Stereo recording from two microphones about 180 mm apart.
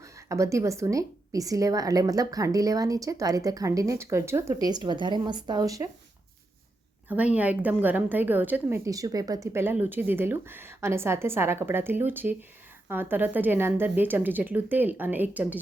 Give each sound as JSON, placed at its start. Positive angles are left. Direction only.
{"t": 0.0, "sound": "a woman's voice", "side_deg": -15}
{"t": 7.1, "sound": "a woman's voice", "side_deg": -10}